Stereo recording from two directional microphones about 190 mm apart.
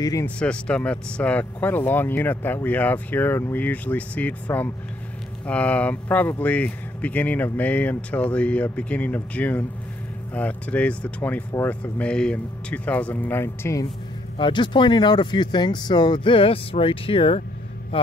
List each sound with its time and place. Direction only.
0.0 s speech: 15° left (ahead or behind)
0.4 s speech: 5° left (ahead or behind)
14.4 s speech: 25° left (ahead or behind)